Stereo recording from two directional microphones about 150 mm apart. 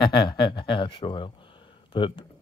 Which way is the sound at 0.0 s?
30° left (ahead or behind).